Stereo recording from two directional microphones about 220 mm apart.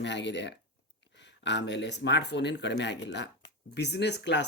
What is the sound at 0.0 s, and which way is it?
Speech, 55° left (ahead or behind).